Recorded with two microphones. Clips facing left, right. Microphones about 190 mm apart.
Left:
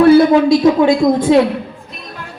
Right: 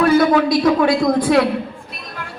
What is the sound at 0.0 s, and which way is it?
A man's voice, 30° left (ahead or behind).